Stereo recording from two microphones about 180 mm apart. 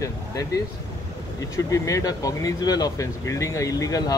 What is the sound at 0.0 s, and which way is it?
Speech, 20° left (ahead or behind).